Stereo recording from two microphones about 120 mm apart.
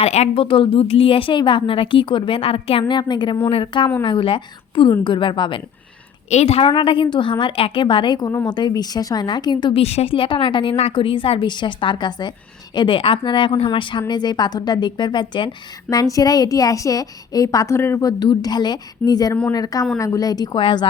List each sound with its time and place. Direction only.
0.0 s a woman's voice: 60° left (ahead or behind)
2.8 s a woman's voice: 40° left (ahead or behind)
6.3 s a woman's voice: 60° left (ahead or behind)
6.7 s a woman's voice: 45° left (ahead or behind)
9.8 s a woman's voice: 60° left (ahead or behind); by 15.4 s 40° left (ahead or behind)
15.9 s a woman's voice: 30° left (ahead or behind)
18.2 s a woman's voice: 35° left (ahead or behind)